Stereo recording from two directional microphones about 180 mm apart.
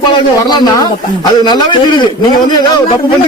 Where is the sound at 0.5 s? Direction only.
20° left (ahead or behind).